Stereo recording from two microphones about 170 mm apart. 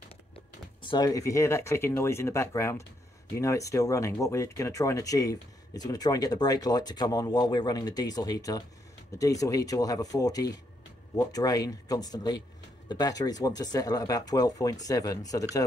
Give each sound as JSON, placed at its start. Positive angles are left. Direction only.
{"t": 0.8, "sound": "speech", "side_deg": 25}